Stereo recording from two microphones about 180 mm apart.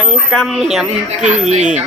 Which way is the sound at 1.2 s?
40° right (ahead or behind).